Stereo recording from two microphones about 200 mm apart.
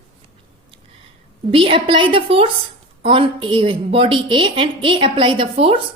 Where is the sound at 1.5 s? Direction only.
25° right (ahead or behind).